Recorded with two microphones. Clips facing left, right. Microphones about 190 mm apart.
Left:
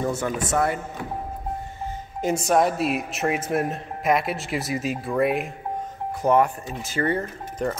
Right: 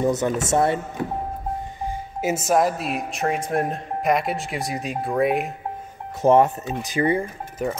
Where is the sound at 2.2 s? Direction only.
5° right (ahead or behind).